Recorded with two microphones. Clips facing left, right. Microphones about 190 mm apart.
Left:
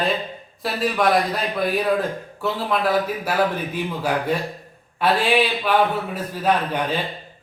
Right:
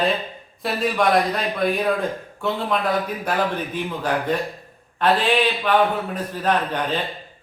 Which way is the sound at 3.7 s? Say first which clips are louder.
Even; 10° left (ahead or behind).